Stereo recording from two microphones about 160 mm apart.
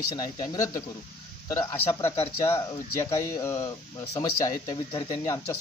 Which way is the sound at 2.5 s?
20° left (ahead or behind).